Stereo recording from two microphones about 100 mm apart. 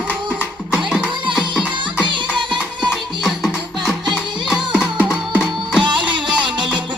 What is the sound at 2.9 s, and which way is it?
Music, centre (ahead or behind).